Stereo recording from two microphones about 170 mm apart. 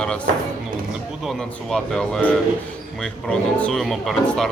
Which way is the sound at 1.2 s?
Centre (ahead or behind).